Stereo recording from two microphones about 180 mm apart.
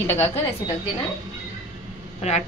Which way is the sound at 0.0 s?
10° left (ahead or behind).